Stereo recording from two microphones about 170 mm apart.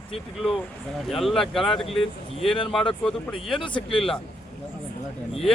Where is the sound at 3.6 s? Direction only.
30° left (ahead or behind).